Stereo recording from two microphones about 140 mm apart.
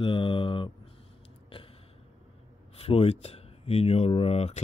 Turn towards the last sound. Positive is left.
turn(degrees=50)  # may be behind; listen again after turning